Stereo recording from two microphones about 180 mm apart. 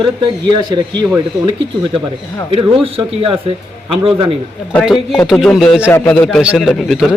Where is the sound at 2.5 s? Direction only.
30° right (ahead or behind).